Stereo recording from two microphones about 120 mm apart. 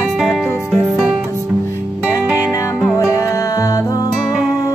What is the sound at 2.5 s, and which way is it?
Music, 25° left (ahead or behind).